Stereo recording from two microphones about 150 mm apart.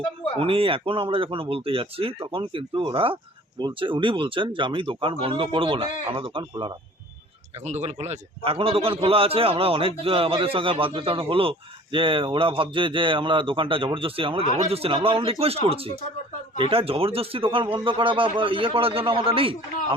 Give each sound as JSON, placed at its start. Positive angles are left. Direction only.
{"t": 0.3, "sound": "a man's voice", "side_deg": -35}
{"t": 7.5, "sound": "a man's voice", "side_deg": -45}